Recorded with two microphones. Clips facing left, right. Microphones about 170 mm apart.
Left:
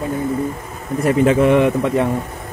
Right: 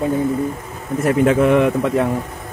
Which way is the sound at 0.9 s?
Centre (ahead or behind).